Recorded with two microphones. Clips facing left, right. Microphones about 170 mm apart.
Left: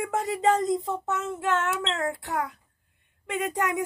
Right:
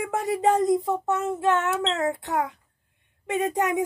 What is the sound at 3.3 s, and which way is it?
Speech, 15° right (ahead or behind).